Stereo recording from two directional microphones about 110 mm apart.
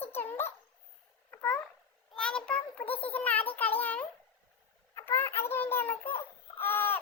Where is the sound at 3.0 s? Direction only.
15° left (ahead or behind).